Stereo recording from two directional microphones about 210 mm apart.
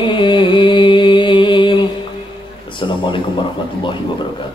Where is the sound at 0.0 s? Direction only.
25° left (ahead or behind).